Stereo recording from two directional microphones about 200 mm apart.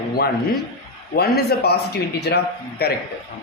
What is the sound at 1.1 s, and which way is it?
Speech, 50° left (ahead or behind).